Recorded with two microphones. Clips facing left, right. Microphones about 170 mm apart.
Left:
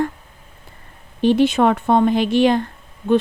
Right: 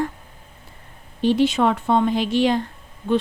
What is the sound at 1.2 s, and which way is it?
A woman's voice, 55° left (ahead or behind).